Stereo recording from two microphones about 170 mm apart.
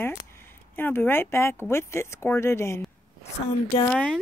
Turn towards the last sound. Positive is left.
turn(degrees=5)  # may be behind; listen again after turning